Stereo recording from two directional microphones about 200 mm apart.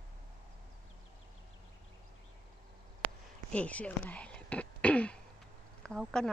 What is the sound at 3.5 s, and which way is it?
Throat clearing, 5° left (ahead or behind).